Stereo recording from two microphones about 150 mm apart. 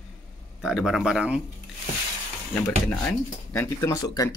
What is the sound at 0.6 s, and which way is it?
Speech, 5° right (ahead or behind).